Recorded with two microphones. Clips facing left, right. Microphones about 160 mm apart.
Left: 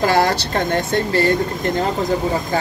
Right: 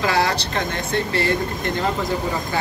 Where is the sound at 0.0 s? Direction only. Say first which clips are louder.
Left 4 dB; 45° left (ahead or behind).